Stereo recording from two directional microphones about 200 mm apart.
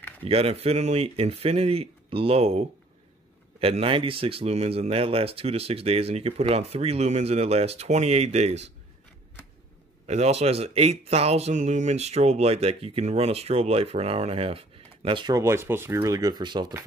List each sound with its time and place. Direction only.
0.2 s speech: 30° right (ahead or behind)
10.0 s speech: 35° right (ahead or behind)